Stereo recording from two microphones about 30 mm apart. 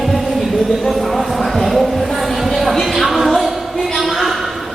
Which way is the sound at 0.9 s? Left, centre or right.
Centre.